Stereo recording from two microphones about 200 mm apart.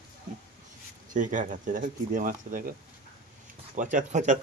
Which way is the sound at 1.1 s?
40° right (ahead or behind).